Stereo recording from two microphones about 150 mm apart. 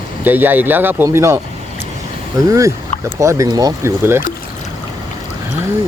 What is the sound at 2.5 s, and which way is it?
Speech, 20° right (ahead or behind).